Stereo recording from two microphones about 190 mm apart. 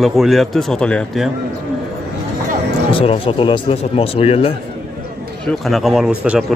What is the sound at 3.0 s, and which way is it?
Speech, 30° left (ahead or behind).